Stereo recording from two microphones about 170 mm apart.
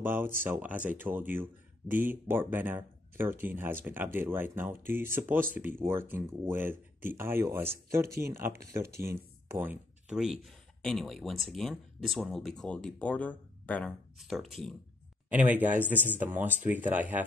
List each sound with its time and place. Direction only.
0.0 s speech: 10° right (ahead or behind)
15.2 s speech: 10° right (ahead or behind)